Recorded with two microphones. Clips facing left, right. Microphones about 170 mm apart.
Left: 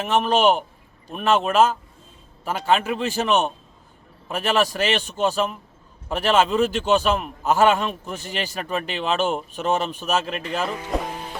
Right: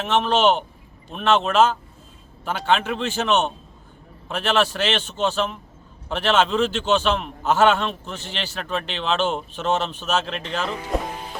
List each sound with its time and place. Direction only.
0.0 s a man's voice: 5° left (ahead or behind)